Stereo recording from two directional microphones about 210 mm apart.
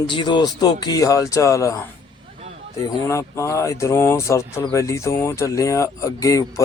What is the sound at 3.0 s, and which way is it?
Speech, 15° left (ahead or behind).